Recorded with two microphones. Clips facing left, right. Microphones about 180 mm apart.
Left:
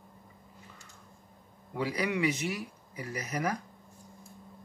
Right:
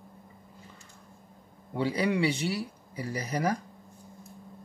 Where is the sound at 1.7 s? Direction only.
30° right (ahead or behind).